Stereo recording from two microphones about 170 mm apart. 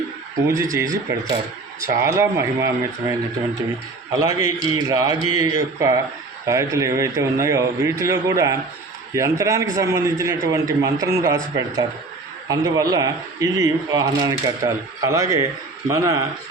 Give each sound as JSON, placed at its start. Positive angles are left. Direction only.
{"t": 0.4, "sound": "a man's voice", "side_deg": -15}
{"t": 4.2, "sound": "a man's voice", "side_deg": -20}